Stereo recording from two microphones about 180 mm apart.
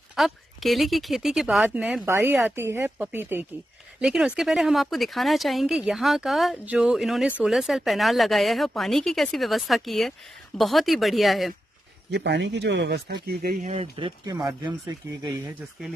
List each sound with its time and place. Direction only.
0.1 s speech: centre (ahead or behind)
12.1 s speech: 70° right (ahead or behind)
13.7 s speech: 30° right (ahead or behind)